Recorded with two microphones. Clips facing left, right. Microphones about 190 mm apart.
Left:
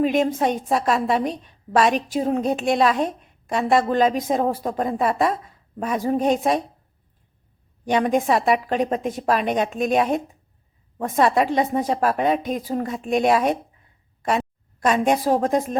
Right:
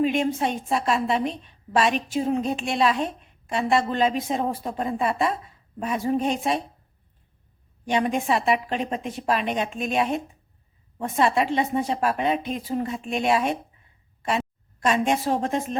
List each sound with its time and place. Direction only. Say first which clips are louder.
0.0 s a woman's voice: left 3 dB; 40° left (ahead or behind)
7.9 s a woman's voice: left 4 dB; 45° left (ahead or behind)
14.8 s a woman's voice: left 3 dB; 40° left (ahead or behind)